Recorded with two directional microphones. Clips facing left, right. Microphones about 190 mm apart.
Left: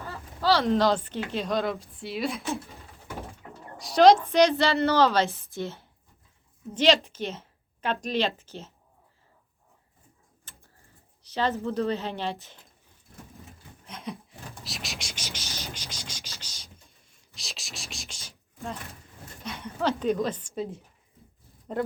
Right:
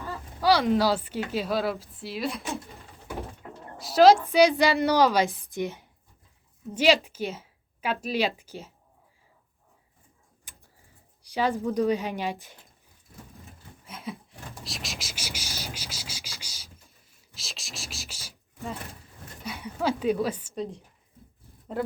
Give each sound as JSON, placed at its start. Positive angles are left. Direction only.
{"t": 0.4, "sound": "speech", "side_deg": -10}
{"t": 3.8, "sound": "a woman's voice", "side_deg": -5}
{"t": 10.5, "sound": "a sound", "side_deg": -15}
{"t": 11.2, "sound": "a woman's voice", "side_deg": -10}
{"t": 13.8, "sound": "a sound", "side_deg": -5}
{"t": 19.5, "sound": "a woman's voice", "side_deg": -10}
{"t": 20.6, "sound": "speech", "side_deg": 5}